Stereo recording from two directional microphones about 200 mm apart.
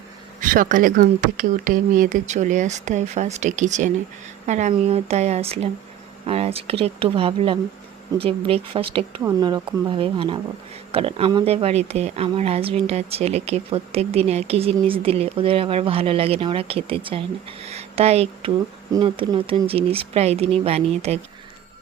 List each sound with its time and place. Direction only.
0.3 s speech: 45° right (ahead or behind)